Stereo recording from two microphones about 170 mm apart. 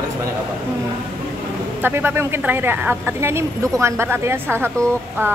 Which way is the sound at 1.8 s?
10° right (ahead or behind).